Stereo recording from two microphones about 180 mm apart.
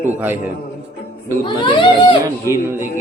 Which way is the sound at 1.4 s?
30° left (ahead or behind).